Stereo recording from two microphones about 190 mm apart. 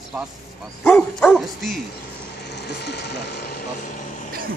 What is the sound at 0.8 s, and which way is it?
Dog, 10° left (ahead or behind).